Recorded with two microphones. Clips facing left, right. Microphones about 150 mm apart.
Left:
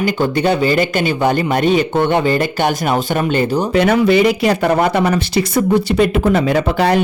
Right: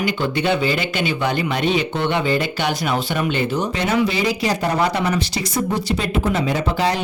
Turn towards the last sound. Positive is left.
turn(degrees=60)  # may be behind; listen again after turning